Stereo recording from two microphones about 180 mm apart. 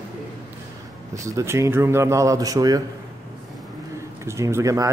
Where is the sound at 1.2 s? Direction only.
15° right (ahead or behind).